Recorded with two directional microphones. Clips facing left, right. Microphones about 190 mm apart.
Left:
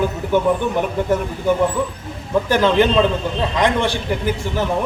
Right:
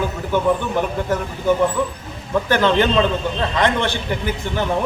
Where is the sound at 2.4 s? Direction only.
10° left (ahead or behind).